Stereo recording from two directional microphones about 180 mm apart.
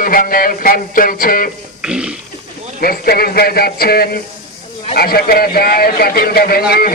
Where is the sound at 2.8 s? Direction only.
55° left (ahead or behind).